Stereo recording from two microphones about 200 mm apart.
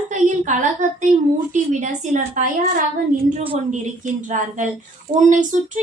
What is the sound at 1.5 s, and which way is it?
A woman's voice, 40° right (ahead or behind).